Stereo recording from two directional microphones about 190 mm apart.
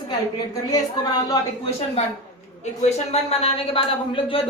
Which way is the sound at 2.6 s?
35° left (ahead or behind).